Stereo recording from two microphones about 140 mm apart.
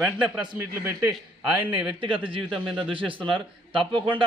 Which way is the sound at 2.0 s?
35° right (ahead or behind).